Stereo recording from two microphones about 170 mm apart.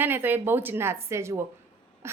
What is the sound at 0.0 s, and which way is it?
A woman's voice, 10° right (ahead or behind).